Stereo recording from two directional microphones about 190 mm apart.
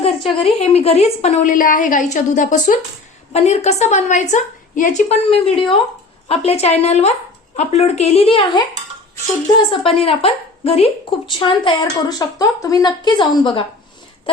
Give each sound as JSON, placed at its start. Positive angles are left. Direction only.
{"t": 0.0, "sound": "a woman's voice", "side_deg": 30}